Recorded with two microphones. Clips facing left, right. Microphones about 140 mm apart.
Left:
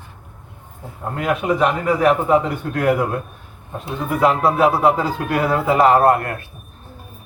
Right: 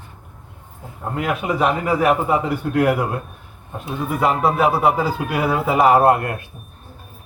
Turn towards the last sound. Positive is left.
turn(degrees=-15)  # may be behind; listen again after turning